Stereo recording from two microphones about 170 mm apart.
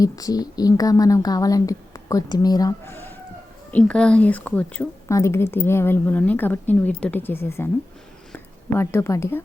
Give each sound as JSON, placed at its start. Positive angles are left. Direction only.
{"t": 0.0, "sound": "a woman's voice", "side_deg": 20}